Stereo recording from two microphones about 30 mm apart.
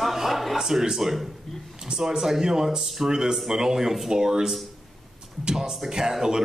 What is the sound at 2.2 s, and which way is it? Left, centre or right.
Speech, centre.